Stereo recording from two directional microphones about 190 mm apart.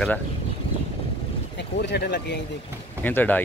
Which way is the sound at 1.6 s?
60° left (ahead or behind).